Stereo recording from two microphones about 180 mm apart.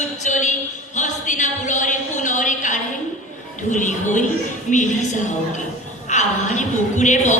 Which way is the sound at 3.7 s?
45° left (ahead or behind).